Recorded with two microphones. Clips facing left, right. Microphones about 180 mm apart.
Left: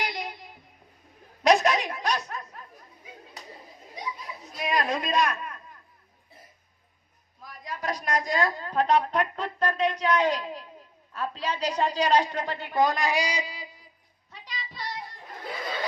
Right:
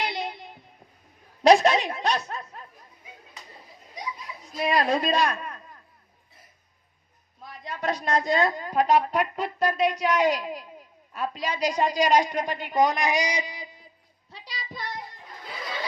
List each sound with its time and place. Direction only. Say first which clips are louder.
0.0 s child singing: right 3 dB; 25° right (ahead or behind)
1.5 s a woman's voice: right 4 dB; 30° right (ahead or behind)
4.5 s a man's voice: right 4 dB; 35° right (ahead or behind)
7.4 s a woman's voice: right 3 dB; 25° right (ahead or behind)
14.3 s child singing: right 1 dB; 35° right (ahead or behind)